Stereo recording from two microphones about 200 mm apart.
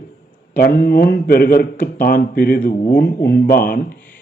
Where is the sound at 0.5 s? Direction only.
45° left (ahead or behind).